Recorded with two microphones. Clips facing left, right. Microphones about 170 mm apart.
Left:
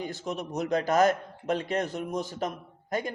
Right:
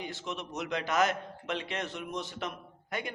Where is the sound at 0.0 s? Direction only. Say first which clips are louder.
Left 5 dB; 40° left (ahead or behind).